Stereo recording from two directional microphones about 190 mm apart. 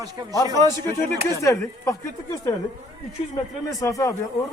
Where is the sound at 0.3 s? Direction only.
15° left (ahead or behind).